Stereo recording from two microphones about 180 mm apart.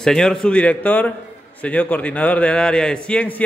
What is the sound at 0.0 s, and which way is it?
A man's voice, 5° left (ahead or behind).